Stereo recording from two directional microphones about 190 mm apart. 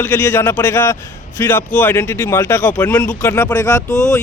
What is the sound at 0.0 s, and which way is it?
Speech, 10° left (ahead or behind).